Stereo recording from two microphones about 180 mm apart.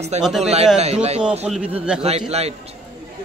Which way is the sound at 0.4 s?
35° right (ahead or behind).